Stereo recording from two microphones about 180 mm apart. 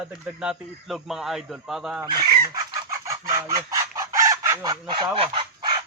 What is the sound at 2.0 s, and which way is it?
Chicken, 20° right (ahead or behind).